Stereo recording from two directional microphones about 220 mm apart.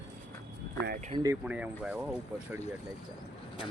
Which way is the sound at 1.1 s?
15° right (ahead or behind).